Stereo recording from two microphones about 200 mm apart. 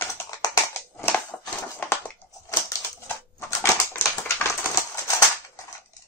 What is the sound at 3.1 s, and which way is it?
Scissors, 15° left (ahead or behind).